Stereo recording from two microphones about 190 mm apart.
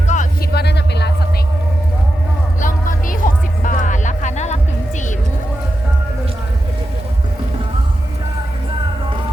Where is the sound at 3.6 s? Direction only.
45° left (ahead or behind).